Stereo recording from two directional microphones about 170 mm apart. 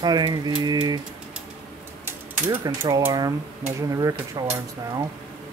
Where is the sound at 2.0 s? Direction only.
15° right (ahead or behind).